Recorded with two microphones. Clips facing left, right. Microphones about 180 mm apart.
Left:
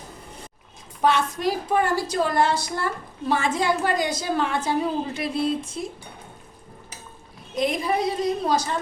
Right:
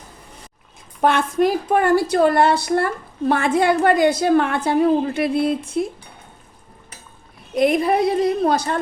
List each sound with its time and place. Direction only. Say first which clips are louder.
1.0 s a woman's voice: right 5 dB; 55° right (ahead or behind)
7.5 s a woman's voice: right 7 dB; 60° right (ahead or behind)